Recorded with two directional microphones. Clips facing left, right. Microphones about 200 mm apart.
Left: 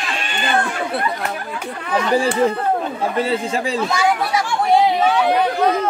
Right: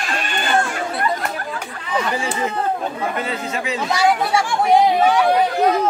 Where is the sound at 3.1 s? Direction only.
30° left (ahead or behind).